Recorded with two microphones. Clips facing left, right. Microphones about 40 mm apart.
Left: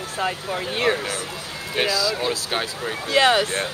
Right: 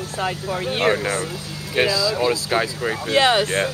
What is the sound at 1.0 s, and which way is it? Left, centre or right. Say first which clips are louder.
Speech: right 5 dB; right.